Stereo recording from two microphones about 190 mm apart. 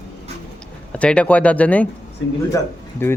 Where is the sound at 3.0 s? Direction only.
10° left (ahead or behind).